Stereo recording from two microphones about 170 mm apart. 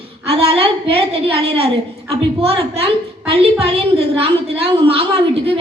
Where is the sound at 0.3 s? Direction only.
35° right (ahead or behind).